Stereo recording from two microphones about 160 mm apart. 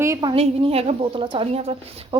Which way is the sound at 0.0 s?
25° right (ahead or behind).